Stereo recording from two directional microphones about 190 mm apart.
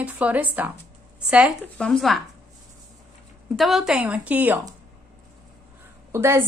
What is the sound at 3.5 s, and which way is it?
Speech, centre (ahead or behind).